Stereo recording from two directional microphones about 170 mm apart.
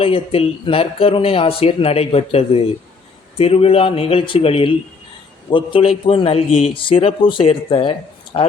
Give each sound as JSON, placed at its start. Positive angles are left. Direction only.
{"t": 0.0, "sound": "speech", "side_deg": 35}